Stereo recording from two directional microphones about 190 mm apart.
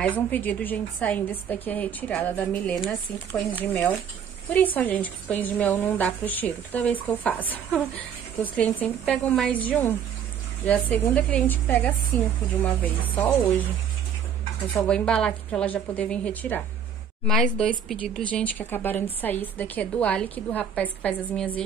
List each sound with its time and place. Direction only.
0.0 s a woman's voice: 10° left (ahead or behind)
14.7 s a woman's voice: 5° left (ahead or behind)